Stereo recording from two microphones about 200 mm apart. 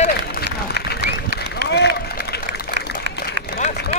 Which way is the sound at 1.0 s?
60° right (ahead or behind).